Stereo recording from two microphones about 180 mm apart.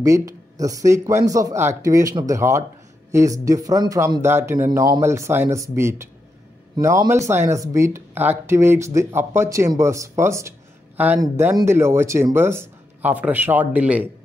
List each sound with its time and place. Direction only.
0.0 s speech: 20° right (ahead or behind)